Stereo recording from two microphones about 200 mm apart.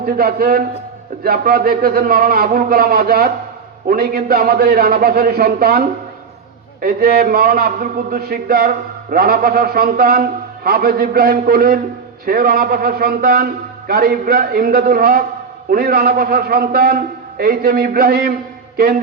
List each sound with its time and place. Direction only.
0.0 s a man's voice: 50° right (ahead or behind)
6.8 s a man's voice: 50° right (ahead or behind)